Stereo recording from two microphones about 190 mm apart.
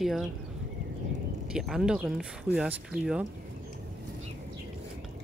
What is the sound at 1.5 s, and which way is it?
Speech, 5° right (ahead or behind).